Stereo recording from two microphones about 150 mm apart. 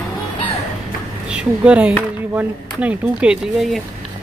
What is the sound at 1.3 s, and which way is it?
Speech, 5° right (ahead or behind).